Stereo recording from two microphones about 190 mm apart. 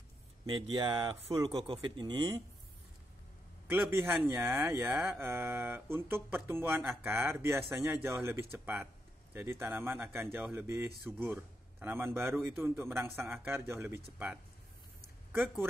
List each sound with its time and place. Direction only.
0.5 s speech: 25° right (ahead or behind)
3.6 s a man's voice: 10° right (ahead or behind)